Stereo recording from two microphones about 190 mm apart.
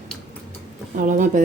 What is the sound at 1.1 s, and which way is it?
Speech, 40° right (ahead or behind).